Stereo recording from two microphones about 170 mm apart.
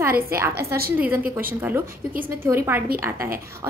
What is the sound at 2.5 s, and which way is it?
Speech, 15° right (ahead or behind).